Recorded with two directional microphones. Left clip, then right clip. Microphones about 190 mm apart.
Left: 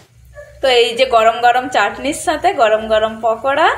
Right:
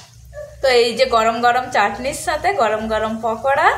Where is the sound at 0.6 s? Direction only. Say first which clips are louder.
Left 2 dB; 10° left (ahead or behind).